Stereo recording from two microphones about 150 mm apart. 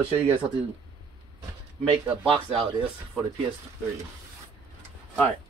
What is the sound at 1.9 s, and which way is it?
Speech, 35° right (ahead or behind).